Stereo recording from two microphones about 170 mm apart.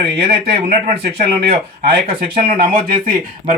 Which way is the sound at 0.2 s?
70° right (ahead or behind).